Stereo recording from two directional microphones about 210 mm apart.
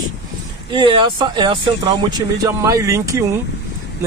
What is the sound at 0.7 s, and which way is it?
Speech, 25° right (ahead or behind).